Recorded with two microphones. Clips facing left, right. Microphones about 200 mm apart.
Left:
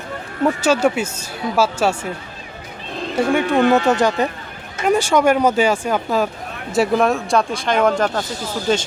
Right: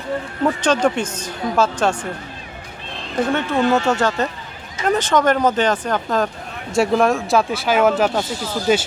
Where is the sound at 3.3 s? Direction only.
15° left (ahead or behind).